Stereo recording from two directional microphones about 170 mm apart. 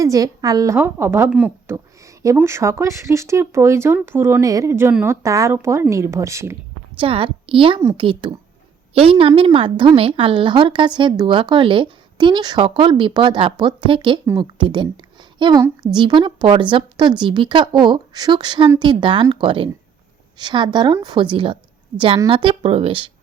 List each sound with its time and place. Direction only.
0.0 s a woman's voice: 20° right (ahead or behind)
2.2 s speech: 15° right (ahead or behind)
7.0 s a woman's voice: 30° right (ahead or behind)